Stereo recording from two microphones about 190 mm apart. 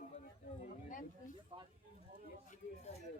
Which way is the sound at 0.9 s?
45° left (ahead or behind).